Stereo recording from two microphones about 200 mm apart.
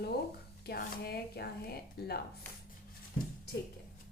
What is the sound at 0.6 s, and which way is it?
Speech, 50° left (ahead or behind).